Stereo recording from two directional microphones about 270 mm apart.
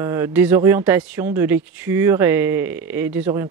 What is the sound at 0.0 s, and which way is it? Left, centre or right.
Speech, centre.